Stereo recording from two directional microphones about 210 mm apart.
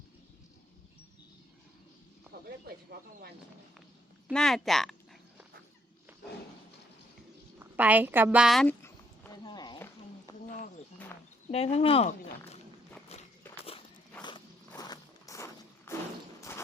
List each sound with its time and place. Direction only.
2.3 s a sound: 50° right (ahead or behind)
4.3 s speech: 5° left (ahead or behind)
7.6 s a woman's voice: 5° right (ahead or behind)
8.8 s a sound: 15° left (ahead or behind)
11.5 s speech: 30° left (ahead or behind)
14.2 s walk: 20° left (ahead or behind)
14.7 s zipper: 15° left (ahead or behind)
16.4 s thump: 10° left (ahead or behind)